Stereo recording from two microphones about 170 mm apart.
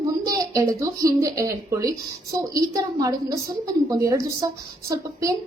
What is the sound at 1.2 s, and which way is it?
A woman's voice, 20° right (ahead or behind).